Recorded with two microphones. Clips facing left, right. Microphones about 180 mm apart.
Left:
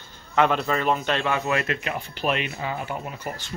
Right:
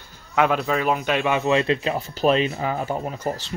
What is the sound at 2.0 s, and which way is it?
Speech, 40° right (ahead or behind).